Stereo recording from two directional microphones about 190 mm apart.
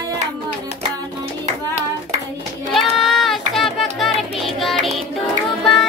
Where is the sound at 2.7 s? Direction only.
Centre (ahead or behind).